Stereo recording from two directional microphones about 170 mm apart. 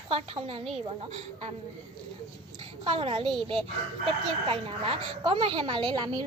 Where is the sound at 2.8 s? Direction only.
35° right (ahead or behind).